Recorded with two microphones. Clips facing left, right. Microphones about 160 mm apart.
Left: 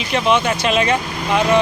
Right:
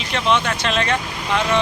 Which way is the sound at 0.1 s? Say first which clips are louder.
Left 3 dB; 10° left (ahead or behind).